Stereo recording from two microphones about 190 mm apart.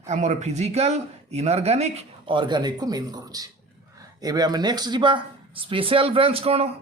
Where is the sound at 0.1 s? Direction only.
40° right (ahead or behind).